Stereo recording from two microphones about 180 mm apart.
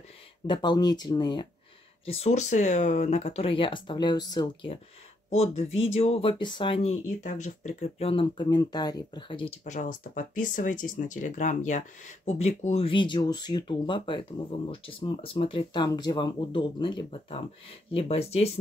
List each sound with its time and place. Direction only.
0.5 s speech: 25° left (ahead or behind)
5.3 s speech: 35° left (ahead or behind)